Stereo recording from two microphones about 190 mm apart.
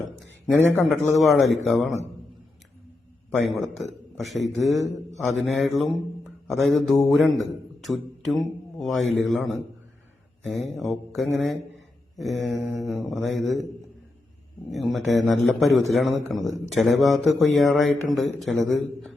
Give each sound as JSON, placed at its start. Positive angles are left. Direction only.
{"t": 0.2, "sound": "speech", "side_deg": 10}
{"t": 3.4, "sound": "speech", "side_deg": 0}
{"t": 14.7, "sound": "speech", "side_deg": 0}